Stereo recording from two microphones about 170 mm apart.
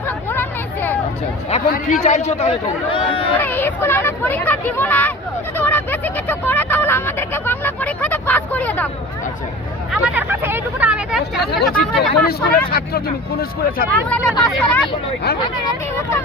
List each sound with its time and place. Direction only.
0.3 s hubbub: 10° left (ahead or behind)
1.7 s speech: 45° left (ahead or behind)
3.3 s speech: 10° left (ahead or behind)
5.5 s vehicle: 10° left (ahead or behind)
9.9 s speech: 10° right (ahead or behind)
12.1 s speech: 65° left (ahead or behind)
14.1 s speech: 5° left (ahead or behind)
15.6 s speech: 15° left (ahead or behind)